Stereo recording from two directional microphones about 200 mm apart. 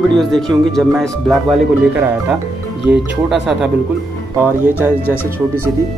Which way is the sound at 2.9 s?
5° right (ahead or behind).